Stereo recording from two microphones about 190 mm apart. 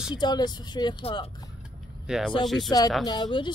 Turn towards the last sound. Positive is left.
turn(degrees=25)  # may be behind; listen again after turning